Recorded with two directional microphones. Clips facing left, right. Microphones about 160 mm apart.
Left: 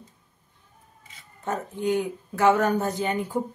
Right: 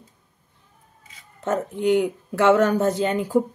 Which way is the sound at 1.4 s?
85° right.